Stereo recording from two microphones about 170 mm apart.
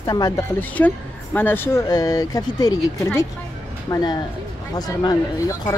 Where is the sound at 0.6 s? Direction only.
10° left (ahead or behind).